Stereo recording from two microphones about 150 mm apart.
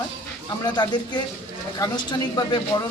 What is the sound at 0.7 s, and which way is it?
Speech, 30° left (ahead or behind).